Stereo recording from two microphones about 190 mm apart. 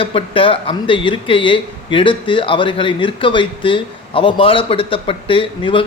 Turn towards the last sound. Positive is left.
turn(degrees=25)  # may be behind; listen again after turning